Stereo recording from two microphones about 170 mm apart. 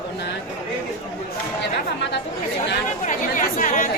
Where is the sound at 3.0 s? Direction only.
50° left (ahead or behind).